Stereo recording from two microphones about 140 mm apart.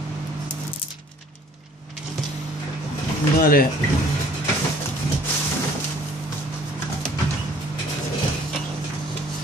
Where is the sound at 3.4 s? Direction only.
90° left.